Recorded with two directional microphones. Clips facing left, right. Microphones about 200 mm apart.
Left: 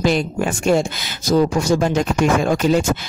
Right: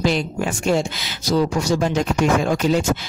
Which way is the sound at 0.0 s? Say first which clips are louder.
Left 2 dB; 50° left (ahead or behind).